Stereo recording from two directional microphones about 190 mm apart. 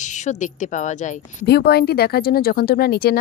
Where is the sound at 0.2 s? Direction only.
40° left (ahead or behind).